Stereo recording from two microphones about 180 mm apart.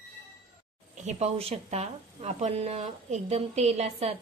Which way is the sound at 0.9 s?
40° right (ahead or behind).